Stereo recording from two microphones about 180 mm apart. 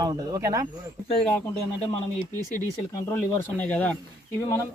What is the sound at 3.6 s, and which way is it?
Speech, 5° left (ahead or behind).